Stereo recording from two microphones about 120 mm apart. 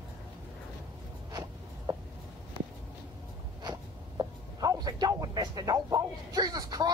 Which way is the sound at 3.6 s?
35° right (ahead or behind).